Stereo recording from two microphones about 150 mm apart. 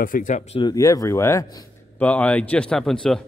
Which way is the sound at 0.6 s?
25° left (ahead or behind).